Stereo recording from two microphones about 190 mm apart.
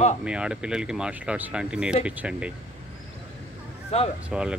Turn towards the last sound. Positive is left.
turn(degrees=-5)  # may be behind; listen again after turning